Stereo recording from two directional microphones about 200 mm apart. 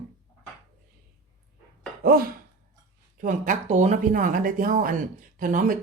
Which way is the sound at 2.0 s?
45° right (ahead or behind).